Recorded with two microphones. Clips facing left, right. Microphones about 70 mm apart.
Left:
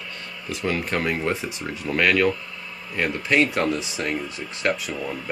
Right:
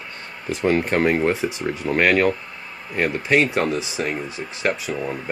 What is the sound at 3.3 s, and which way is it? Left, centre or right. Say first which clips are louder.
Speech: right 1 dB; centre.